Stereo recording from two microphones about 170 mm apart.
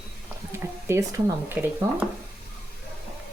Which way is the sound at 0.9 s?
15° right (ahead or behind).